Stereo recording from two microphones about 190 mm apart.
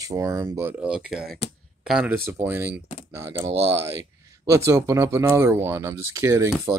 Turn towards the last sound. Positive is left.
turn(degrees=-15)  # may be behind; listen again after turning